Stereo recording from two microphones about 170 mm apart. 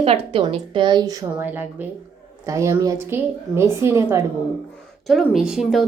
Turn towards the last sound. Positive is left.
turn(degrees=0)  # may be behind; listen again after turning